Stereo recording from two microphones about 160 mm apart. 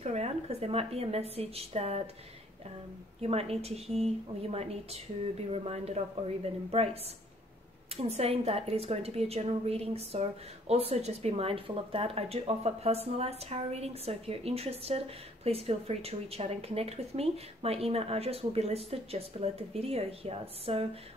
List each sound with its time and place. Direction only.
0.0 s speech: 40° right (ahead or behind)
3.2 s speech: 40° right (ahead or behind)